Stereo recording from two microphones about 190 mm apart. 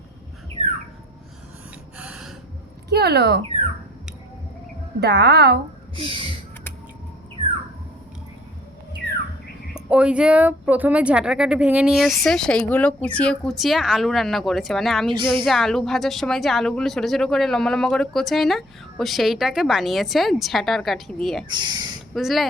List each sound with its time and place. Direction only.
2.0 s gasp: 5° right (ahead or behind)
2.9 s speech: 55° right (ahead or behind)
4.9 s a woman's voice: 60° right (ahead or behind)
6.0 s speech: 30° right (ahead or behind)
9.7 s speech: 5° right (ahead or behind)
21.4 s speech: 25° right (ahead or behind)
22.1 s speech: centre (ahead or behind)